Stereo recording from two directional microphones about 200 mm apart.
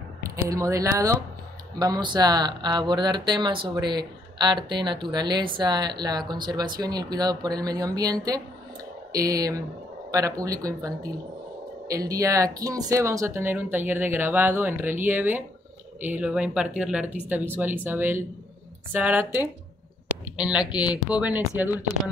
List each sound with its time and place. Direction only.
0.5 s speech: 15° right (ahead or behind)